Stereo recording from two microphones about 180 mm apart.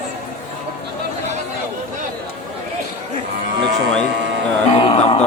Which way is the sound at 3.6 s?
70° right (ahead or behind).